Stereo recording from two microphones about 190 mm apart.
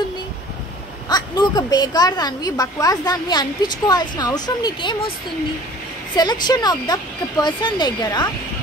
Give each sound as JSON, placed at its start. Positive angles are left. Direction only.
{"t": 1.0, "sound": "a woman's voice", "side_deg": 20}
{"t": 6.1, "sound": "a woman's voice", "side_deg": 20}